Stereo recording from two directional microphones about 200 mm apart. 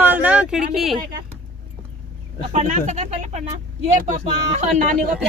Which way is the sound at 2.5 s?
40° right (ahead or behind).